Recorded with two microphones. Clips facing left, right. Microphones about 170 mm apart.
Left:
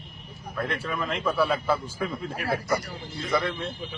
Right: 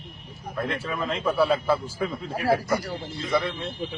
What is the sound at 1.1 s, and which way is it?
A man's voice, 30° right (ahead or behind).